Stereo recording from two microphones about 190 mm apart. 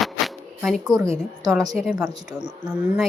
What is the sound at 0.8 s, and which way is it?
Speech, 20° right (ahead or behind).